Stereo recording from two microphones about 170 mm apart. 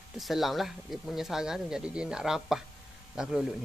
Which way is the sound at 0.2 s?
Centre (ahead or behind).